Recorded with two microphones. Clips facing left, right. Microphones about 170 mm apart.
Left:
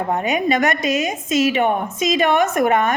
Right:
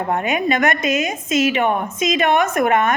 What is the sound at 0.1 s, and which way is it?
A woman's voice, 35° left (ahead or behind).